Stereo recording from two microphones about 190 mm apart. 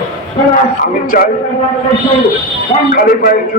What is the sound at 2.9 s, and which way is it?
Speech, 45° left (ahead or behind).